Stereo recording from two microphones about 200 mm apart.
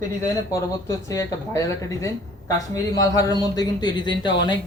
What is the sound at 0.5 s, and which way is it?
Speech, 15° left (ahead or behind).